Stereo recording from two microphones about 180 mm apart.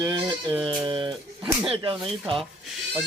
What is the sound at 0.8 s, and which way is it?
Speech, 25° right (ahead or behind).